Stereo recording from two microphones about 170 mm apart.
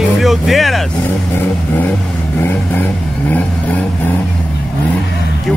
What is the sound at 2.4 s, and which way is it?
Vehicle, 10° left (ahead or behind).